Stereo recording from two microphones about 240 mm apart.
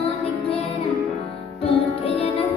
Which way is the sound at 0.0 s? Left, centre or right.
Left.